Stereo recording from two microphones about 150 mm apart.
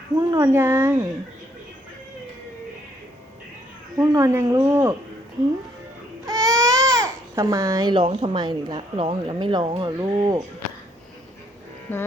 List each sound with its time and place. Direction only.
0.2 s speech: 20° right (ahead or behind)
3.9 s speech: 20° right (ahead or behind)
6.2 s speech: 25° right (ahead or behind)
11.9 s music: 15° left (ahead or behind)